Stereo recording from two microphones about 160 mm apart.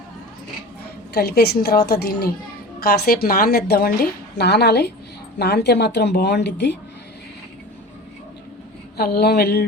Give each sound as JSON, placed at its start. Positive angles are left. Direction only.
{"t": 1.1, "sound": "a woman's voice", "side_deg": 80}
{"t": 9.0, "sound": "a woman's voice", "side_deg": 75}